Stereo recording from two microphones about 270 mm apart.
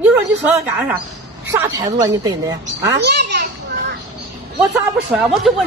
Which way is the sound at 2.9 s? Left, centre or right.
Right.